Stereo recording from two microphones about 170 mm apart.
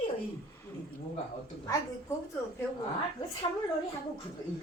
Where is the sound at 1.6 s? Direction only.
20° left (ahead or behind).